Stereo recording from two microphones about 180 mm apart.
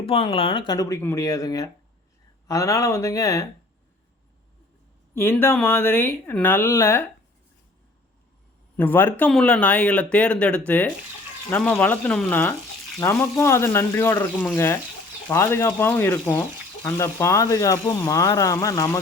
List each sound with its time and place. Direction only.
0.0 s speech: 30° left (ahead or behind)
5.1 s speech: 10° left (ahead or behind)
8.7 s speech: 10° left (ahead or behind)